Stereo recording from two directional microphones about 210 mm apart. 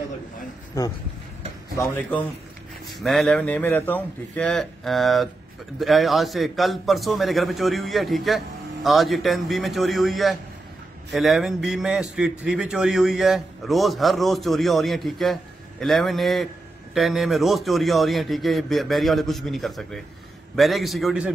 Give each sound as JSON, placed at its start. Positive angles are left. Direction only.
{"t": 0.8, "sound": "a man's voice", "side_deg": 15}